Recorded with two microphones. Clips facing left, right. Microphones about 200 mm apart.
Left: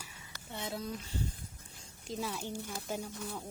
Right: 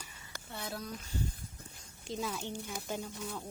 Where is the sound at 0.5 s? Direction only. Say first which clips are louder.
Left 2 dB; 25° left (ahead or behind).